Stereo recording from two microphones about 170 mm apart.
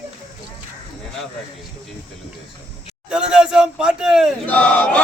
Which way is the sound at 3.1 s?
5° right (ahead or behind).